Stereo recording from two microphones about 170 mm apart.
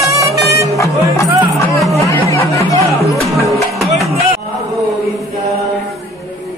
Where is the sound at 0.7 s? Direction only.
20° left (ahead or behind).